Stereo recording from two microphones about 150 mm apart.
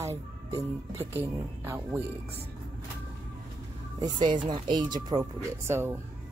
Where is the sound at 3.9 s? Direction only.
30° right (ahead or behind).